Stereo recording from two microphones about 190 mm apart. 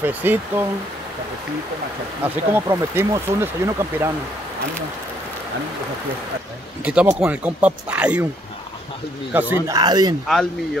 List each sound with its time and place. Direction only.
0.0 s speech: 10° right (ahead or behind)
2.2 s speech: 10° right (ahead or behind)
6.8 s speech: 5° right (ahead or behind)
9.3 s speech: 10° right (ahead or behind)